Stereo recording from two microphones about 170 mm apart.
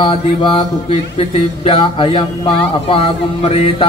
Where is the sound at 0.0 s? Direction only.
30° left (ahead or behind).